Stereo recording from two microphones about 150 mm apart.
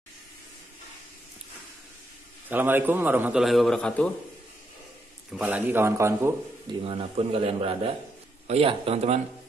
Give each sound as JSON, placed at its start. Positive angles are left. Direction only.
{"t": 2.4, "sound": "a man's voice", "side_deg": -15}
{"t": 3.4, "sound": "a man's voice", "side_deg": 0}
{"t": 5.4, "sound": "a man's voice", "side_deg": -15}
{"t": 6.7, "sound": "a man's voice", "side_deg": -40}